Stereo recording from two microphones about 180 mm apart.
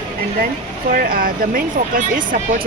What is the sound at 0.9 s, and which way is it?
Speech, 55° right (ahead or behind).